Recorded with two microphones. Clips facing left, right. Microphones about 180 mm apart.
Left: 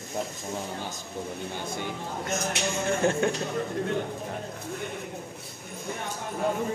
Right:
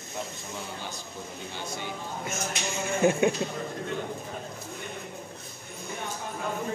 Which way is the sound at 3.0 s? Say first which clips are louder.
Right 4 dB; 10° right (ahead or behind).